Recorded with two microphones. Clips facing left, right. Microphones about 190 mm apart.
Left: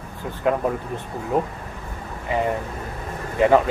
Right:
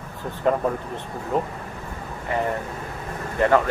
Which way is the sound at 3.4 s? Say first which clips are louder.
Left 3 dB; 15° left (ahead or behind).